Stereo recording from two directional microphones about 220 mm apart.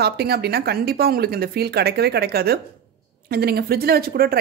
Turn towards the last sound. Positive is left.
turn(degrees=-45)  # may be behind; listen again after turning